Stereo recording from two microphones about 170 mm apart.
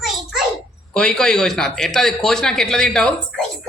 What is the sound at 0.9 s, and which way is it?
Speech, 5° left (ahead or behind).